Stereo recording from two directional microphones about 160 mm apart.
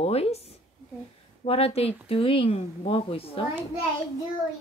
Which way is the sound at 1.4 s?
40° left (ahead or behind).